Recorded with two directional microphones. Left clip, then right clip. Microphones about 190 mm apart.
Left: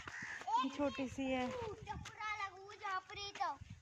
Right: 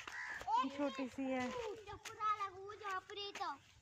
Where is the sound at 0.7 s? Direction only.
Centre (ahead or behind).